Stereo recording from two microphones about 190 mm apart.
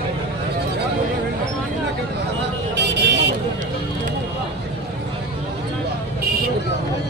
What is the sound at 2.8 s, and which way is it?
Vehicle, 65° right (ahead or behind).